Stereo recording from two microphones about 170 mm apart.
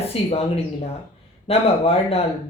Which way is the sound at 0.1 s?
35° left (ahead or behind).